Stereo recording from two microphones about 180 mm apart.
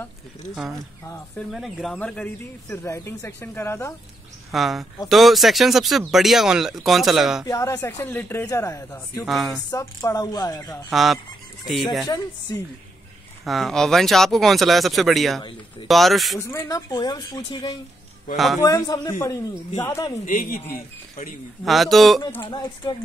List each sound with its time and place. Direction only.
1.5 s speech: centre (ahead or behind)
4.5 s speech: centre (ahead or behind)
7.4 s speech: 15° left (ahead or behind)
9.2 s speech: centre (ahead or behind)
9.7 s speech: 20° left (ahead or behind)
10.9 s speech: centre (ahead or behind)
12.1 s speech: 20° left (ahead or behind)
13.5 s speech: centre (ahead or behind)
16.3 s speech: 15° left (ahead or behind)
18.3 s speech: centre (ahead or behind)
18.6 s speech: 20° left (ahead or behind)
20.2 s speech: 50° left (ahead or behind)
21.6 s speech: centre (ahead or behind)
22.5 s speech: 25° left (ahead or behind)